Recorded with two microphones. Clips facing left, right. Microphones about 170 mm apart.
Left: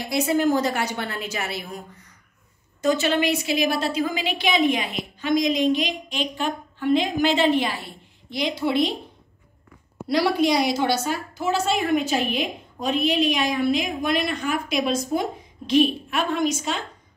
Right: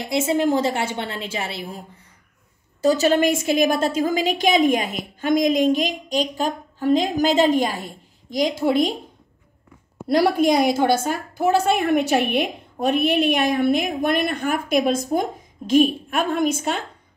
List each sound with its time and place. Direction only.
0.0 s a woman's voice: 25° right (ahead or behind); by 8.9 s 45° right (ahead or behind)
10.0 s a woman's voice: 50° right (ahead or behind)